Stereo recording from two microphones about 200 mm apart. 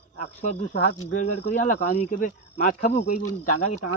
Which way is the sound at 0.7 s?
55° left (ahead or behind).